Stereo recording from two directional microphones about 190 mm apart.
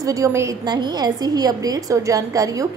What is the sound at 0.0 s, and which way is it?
A woman's voice, 15° right (ahead or behind).